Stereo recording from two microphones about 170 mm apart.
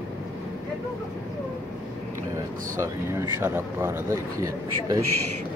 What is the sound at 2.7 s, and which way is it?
Speech, 15° right (ahead or behind).